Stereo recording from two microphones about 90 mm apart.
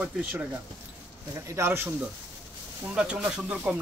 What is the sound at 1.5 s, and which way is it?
Speech, 30° right (ahead or behind).